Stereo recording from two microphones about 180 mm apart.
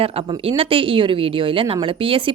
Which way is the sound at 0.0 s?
30° right (ahead or behind).